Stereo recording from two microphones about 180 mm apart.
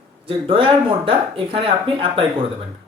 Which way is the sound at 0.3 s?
30° right (ahead or behind).